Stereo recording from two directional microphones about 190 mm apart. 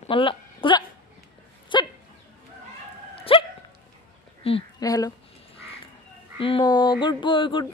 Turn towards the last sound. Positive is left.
turn(degrees=25)  # may be behind; listen again after turning